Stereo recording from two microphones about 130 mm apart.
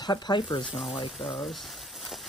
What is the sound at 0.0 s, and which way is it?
Speech, 35° left (ahead or behind).